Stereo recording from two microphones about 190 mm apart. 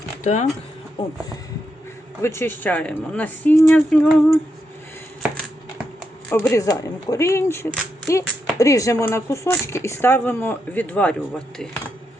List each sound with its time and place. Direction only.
0.3 s speech: 35° left (ahead or behind)
2.2 s speech: 15° left (ahead or behind)
6.3 s speech: 15° left (ahead or behind)